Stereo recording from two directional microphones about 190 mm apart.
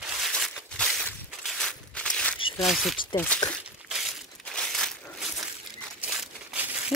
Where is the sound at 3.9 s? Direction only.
Centre (ahead or behind).